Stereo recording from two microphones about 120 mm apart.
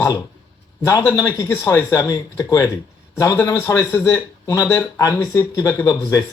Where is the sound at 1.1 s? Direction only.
25° left (ahead or behind).